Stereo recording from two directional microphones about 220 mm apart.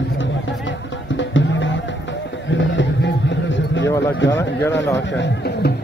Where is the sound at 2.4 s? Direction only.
55° left (ahead or behind).